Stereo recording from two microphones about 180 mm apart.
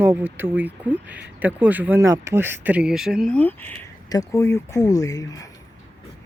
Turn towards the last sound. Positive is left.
turn(degrees=20)  # may be behind; listen again after turning